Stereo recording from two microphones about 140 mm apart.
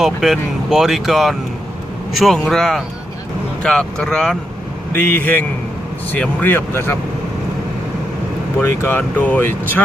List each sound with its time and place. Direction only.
0.0 s speech: 5° right (ahead or behind); by 6.9 s 15° left (ahead or behind)
8.6 s speech: 15° left (ahead or behind)